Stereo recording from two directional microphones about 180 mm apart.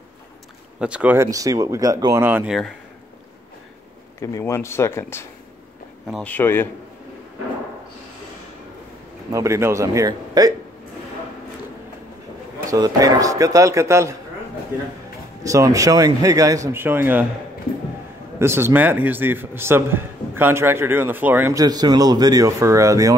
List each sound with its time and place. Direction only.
0.7 s a man's voice: 5° right (ahead or behind)
4.2 s speech: 15° left (ahead or behind)
6.0 s speech: centre (ahead or behind)
6.3 s speech: 10° left (ahead or behind)
9.3 s a man's voice: 15° right (ahead or behind)
12.6 s speech: 20° right (ahead or behind)
15.4 s speech: 20° right (ahead or behind)
18.4 s a man's voice: 15° right (ahead or behind)